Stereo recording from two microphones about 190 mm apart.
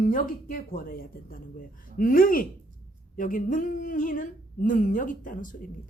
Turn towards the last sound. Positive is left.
turn(degrees=45)  # may be behind; listen again after turning